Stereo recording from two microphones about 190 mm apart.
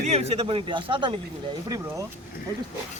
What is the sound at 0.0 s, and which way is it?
Speech, 35° right (ahead or behind).